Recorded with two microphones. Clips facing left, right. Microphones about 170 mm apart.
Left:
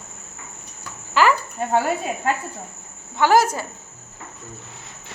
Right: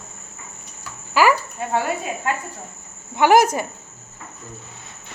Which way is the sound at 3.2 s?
15° right (ahead or behind).